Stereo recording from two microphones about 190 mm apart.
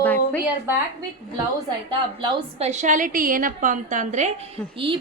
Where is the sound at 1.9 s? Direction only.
25° right (ahead or behind).